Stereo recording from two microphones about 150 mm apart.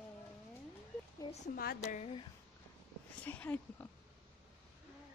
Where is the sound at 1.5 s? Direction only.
75° left (ahead or behind).